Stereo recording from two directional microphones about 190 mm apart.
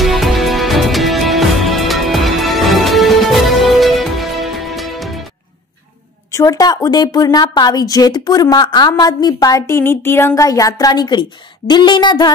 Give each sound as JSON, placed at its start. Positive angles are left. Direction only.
{"t": 0.0, "sound": "music", "side_deg": 0}
{"t": 6.3, "sound": "a woman's voice", "side_deg": 20}